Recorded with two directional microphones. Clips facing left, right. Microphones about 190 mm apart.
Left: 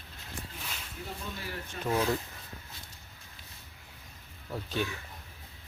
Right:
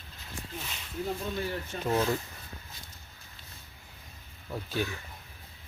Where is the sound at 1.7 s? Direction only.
40° right (ahead or behind).